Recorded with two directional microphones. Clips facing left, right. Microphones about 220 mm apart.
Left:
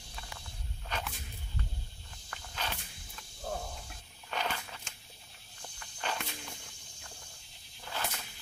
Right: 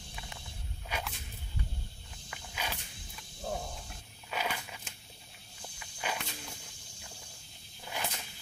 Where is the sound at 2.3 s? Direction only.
10° right (ahead or behind).